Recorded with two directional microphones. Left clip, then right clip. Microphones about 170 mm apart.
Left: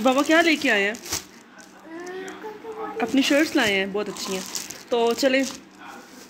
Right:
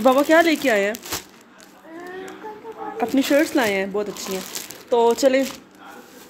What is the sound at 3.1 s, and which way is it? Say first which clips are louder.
Speech: right 2 dB; 15° right (ahead or behind).